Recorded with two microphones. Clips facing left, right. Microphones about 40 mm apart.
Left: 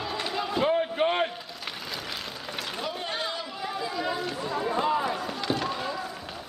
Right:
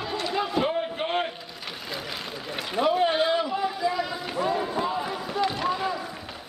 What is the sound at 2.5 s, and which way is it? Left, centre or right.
Vehicle, centre.